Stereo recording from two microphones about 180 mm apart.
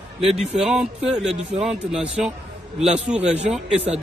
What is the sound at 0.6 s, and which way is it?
Speech, 5° right (ahead or behind).